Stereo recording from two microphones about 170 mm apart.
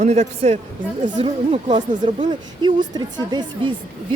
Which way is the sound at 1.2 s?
25° right (ahead or behind).